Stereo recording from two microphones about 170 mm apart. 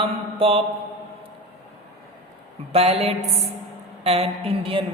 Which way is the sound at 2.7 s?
35° right (ahead or behind).